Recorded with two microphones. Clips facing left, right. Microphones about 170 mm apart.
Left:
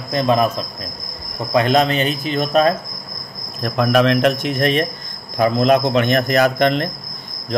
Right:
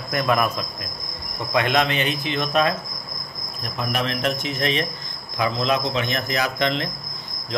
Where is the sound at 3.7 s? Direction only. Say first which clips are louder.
Left 11 dB; 70° left (ahead or behind).